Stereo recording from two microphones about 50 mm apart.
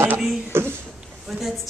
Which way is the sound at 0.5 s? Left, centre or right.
Right.